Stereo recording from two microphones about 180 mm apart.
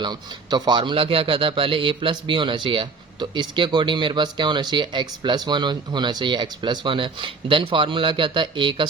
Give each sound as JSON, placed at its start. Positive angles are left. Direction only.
{"t": 0.0, "sound": "a man's voice", "side_deg": -25}